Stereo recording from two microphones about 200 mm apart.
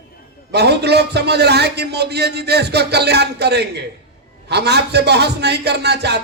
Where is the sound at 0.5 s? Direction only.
55° right (ahead or behind).